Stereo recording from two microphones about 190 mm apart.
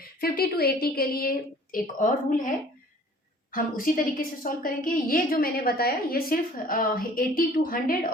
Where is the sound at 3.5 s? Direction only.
45° left (ahead or behind).